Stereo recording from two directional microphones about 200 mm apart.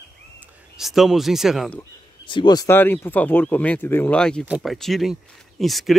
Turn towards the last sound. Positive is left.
turn(degrees=0)  # may be behind; listen again after turning